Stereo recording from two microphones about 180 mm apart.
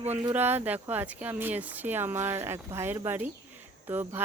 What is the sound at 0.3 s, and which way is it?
Speech, 10° right (ahead or behind).